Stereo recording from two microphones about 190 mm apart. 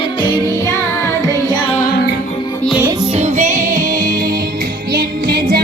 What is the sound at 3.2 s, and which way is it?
Music, 35° right (ahead or behind).